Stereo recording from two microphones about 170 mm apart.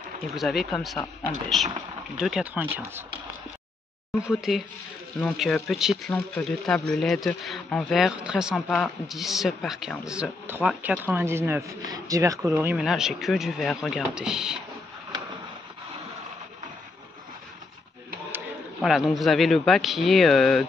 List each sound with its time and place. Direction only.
0.3 s speech: centre (ahead or behind)
2.1 s speech: 5° right (ahead or behind)
4.3 s speech: centre (ahead or behind)
18.8 s speech: centre (ahead or behind)